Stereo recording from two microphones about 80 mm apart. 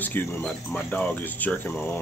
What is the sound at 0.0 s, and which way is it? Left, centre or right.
Speech, left.